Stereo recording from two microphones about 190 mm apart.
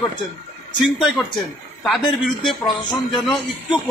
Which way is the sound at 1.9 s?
Centre (ahead or behind).